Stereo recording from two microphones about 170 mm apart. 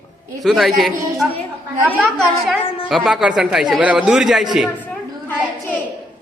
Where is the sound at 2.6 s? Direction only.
30° left (ahead or behind).